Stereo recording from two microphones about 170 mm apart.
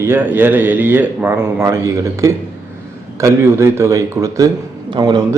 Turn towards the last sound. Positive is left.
turn(degrees=-25)  # may be behind; listen again after turning